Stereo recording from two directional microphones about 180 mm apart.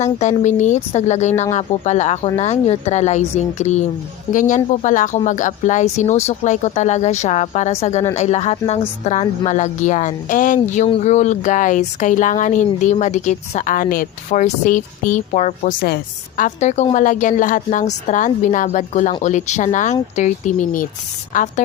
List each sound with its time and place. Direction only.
0.0 s speech: 40° left (ahead or behind)